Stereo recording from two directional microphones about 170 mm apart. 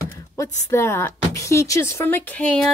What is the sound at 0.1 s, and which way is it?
Speech, 15° left (ahead or behind).